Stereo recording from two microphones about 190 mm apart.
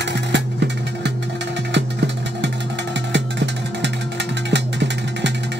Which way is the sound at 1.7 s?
65° right (ahead or behind).